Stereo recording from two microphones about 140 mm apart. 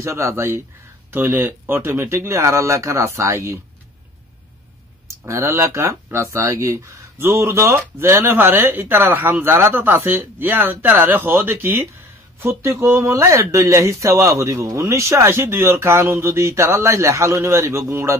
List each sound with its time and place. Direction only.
0.0 s speech: 20° right (ahead or behind)
5.0 s speech: 20° right (ahead or behind)